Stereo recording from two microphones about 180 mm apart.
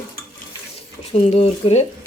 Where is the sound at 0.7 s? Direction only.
35° left (ahead or behind).